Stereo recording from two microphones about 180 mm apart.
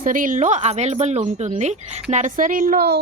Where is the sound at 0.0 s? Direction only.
50° right (ahead or behind).